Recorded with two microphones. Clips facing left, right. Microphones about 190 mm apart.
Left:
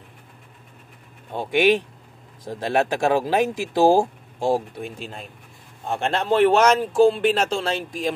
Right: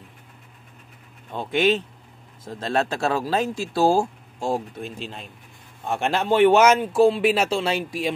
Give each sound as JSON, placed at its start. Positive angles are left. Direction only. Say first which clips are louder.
{"t": 1.3, "sound": "speech", "louder": "left 2 dB", "side_deg": 10}
{"t": 4.8, "sound": "speech", "louder": "even", "side_deg": 45}
{"t": 5.9, "sound": "speech", "louder": "even", "side_deg": 0}